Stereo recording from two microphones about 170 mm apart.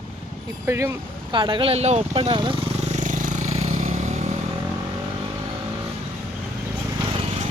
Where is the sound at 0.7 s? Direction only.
15° right (ahead or behind).